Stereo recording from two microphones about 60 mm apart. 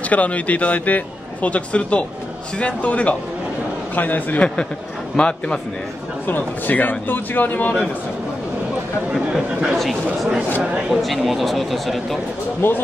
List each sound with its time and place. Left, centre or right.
0.0 s a man's voice: left
5.1 s a man's voice: centre
6.2 s a man's voice: left
9.1 s speech: centre
10.9 s speech: centre
12.6 s a man's voice: left